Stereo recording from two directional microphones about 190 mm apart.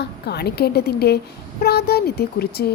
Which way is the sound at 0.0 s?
60° left (ahead or behind).